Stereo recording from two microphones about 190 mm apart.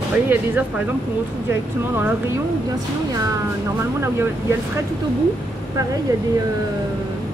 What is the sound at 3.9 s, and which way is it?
Speech, 15° right (ahead or behind).